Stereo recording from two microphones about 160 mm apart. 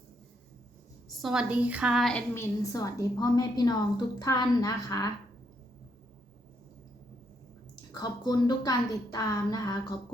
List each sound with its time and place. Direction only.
1.2 s a woman's voice: 5° right (ahead or behind)
2.3 s a woman's voice: 20° left (ahead or behind)
7.8 s a woman's voice: 25° left (ahead or behind)